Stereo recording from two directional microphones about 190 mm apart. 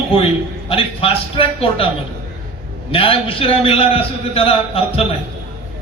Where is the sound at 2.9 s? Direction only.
30° left (ahead or behind).